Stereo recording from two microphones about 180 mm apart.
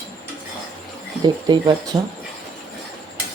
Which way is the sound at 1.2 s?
25° right (ahead or behind).